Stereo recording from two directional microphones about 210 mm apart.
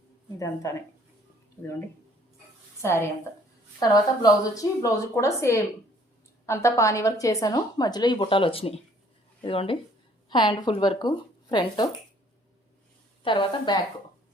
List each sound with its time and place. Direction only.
0.3 s speech: 15° left (ahead or behind)
2.8 s speech: 15° left (ahead or behind)
13.2 s speech: 25° left (ahead or behind)